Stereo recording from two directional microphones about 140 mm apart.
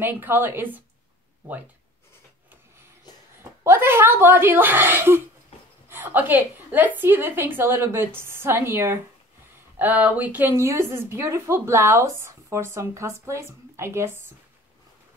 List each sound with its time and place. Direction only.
0.0 s a woman's voice: 15° right (ahead or behind)
3.6 s a woman's voice: 15° right (ahead or behind)